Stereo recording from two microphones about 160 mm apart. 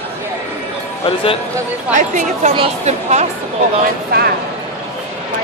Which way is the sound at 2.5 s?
40° right (ahead or behind).